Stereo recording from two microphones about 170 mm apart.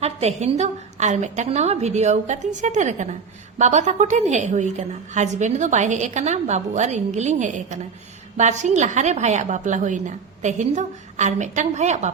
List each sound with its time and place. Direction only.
0.0 s a woman's voice: 40° right (ahead or behind)